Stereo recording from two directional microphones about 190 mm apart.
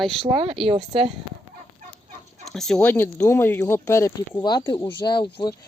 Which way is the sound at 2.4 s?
Centre (ahead or behind).